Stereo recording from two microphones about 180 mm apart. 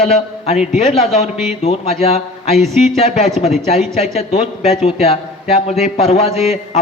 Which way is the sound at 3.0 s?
35° left (ahead or behind).